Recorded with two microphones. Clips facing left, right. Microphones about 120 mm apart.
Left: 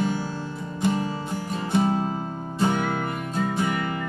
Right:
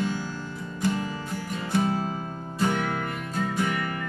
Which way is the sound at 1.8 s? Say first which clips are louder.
Left 3 dB; 25° left (ahead or behind).